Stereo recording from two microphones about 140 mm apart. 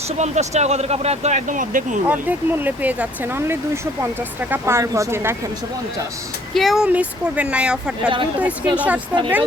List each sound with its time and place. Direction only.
0.2 s speech: 55° right (ahead or behind)
2.0 s speech: 15° right (ahead or behind)
6.5 s speech: centre (ahead or behind)